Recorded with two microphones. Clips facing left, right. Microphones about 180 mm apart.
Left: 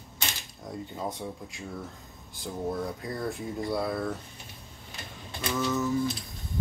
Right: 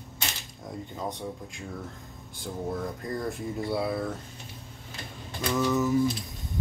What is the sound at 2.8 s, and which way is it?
Speech, 5° left (ahead or behind).